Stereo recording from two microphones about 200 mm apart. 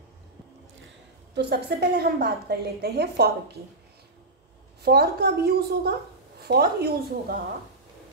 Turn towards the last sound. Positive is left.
turn(degrees=-50)  # may be behind; listen again after turning